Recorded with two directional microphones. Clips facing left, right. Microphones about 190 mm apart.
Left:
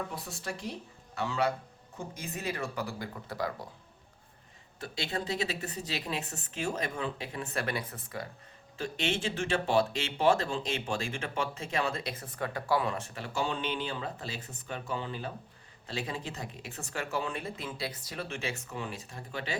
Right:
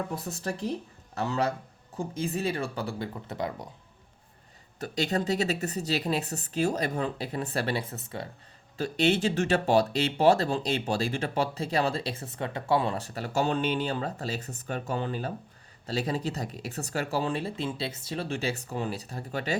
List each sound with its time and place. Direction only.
0.1 s a man's voice: 40° right (ahead or behind); by 3.7 s 20° right (ahead or behind)
4.8 s speech: 40° right (ahead or behind); by 8.3 s 25° right (ahead or behind)
8.8 s speech: 40° right (ahead or behind)